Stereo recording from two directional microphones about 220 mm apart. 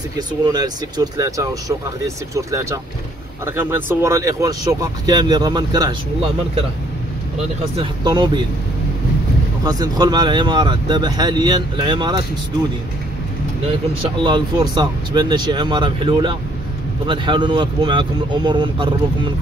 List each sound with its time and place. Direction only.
0.5 s speech: 20° right (ahead or behind)
7.7 s speech: 20° right (ahead or behind)
9.7 s speech: 20° right (ahead or behind)
14.0 s speech: 20° right (ahead or behind)